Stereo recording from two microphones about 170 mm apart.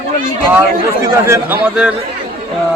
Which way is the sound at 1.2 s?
15° right (ahead or behind).